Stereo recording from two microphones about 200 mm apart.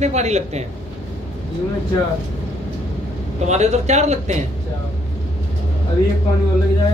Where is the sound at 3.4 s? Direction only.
35° right (ahead or behind).